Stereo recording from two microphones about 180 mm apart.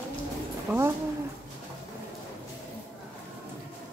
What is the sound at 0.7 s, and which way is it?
Speech, 10° right (ahead or behind).